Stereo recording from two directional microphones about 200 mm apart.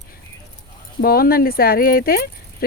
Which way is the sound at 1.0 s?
50° left (ahead or behind).